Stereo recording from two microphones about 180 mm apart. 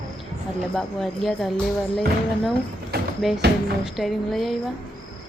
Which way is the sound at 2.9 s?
60° right (ahead or behind).